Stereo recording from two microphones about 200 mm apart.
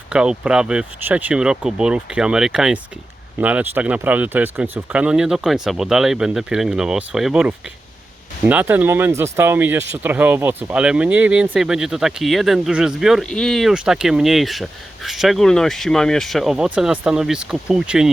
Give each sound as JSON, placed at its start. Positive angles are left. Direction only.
{"t": 0.1, "sound": "speech", "side_deg": -5}